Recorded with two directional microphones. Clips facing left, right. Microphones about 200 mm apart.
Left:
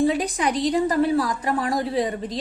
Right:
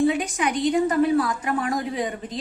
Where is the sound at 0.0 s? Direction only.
35° left (ahead or behind).